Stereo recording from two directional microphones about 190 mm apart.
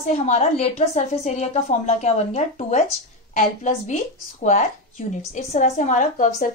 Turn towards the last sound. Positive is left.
turn(degrees=40)  # may be behind; listen again after turning